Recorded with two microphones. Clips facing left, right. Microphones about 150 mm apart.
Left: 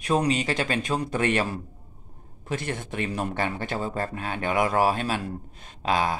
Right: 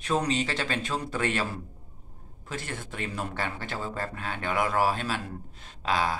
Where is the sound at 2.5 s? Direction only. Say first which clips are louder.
Left 6 dB; 20° left (ahead or behind).